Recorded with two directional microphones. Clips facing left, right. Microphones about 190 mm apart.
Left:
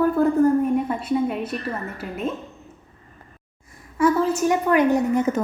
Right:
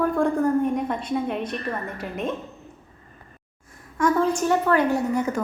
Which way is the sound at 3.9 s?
5° left (ahead or behind).